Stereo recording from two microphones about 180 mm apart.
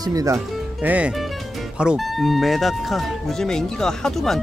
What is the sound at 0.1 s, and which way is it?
Speech, 20° right (ahead or behind).